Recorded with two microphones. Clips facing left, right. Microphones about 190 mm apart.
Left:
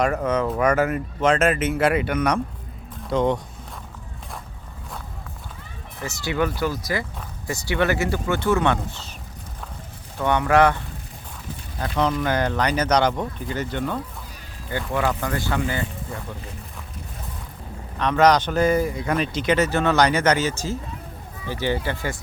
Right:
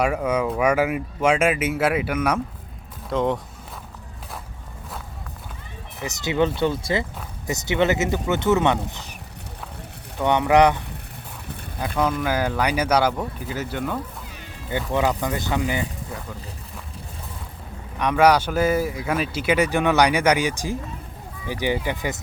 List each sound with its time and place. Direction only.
0.0 s speech: 10° right (ahead or behind)
6.0 s speech: 20° right (ahead or behind)
10.2 s speech: 20° right (ahead or behind)
11.8 s speech: 5° right (ahead or behind)
18.0 s speech: 10° right (ahead or behind)